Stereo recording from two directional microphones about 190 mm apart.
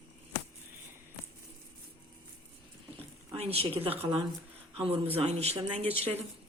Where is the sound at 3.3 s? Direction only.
30° right (ahead or behind).